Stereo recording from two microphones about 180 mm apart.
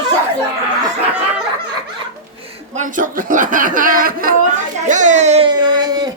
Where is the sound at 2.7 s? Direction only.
45° right (ahead or behind).